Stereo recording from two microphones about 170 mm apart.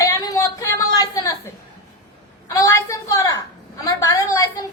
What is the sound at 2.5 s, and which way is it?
Speech, 20° left (ahead or behind).